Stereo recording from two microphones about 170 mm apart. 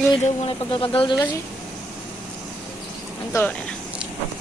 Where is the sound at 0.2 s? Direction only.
30° left (ahead or behind).